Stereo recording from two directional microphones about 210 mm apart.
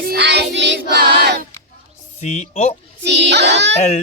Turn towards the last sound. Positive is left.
turn(degrees=-55)  # may be behind; listen again after turning